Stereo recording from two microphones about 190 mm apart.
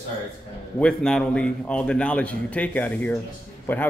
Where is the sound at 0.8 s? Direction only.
5° left (ahead or behind).